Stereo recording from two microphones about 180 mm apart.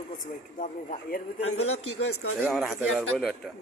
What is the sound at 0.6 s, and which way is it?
Speech, 45° left (ahead or behind).